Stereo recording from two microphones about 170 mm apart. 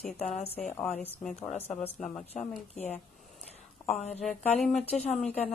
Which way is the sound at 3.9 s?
40° left (ahead or behind).